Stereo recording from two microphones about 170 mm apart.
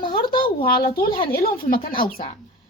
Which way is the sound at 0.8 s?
65° left (ahead or behind).